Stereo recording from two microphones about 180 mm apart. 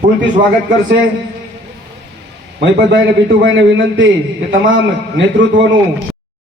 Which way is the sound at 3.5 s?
90° right.